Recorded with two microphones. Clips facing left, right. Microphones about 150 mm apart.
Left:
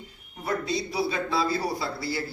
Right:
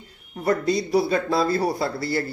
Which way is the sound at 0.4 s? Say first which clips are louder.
Right 7 dB; 50° right (ahead or behind).